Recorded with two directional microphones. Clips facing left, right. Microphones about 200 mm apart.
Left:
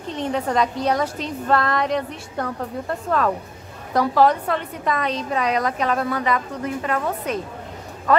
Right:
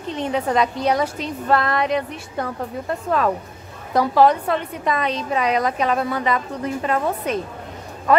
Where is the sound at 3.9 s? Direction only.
15° right (ahead or behind).